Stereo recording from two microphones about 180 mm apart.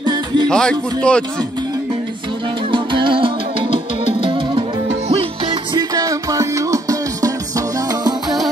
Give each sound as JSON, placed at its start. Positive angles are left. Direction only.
{"t": 0.0, "sound": "music", "side_deg": -25}
{"t": 0.5, "sound": "speech", "side_deg": 5}
{"t": 2.7, "sound": "music", "side_deg": -25}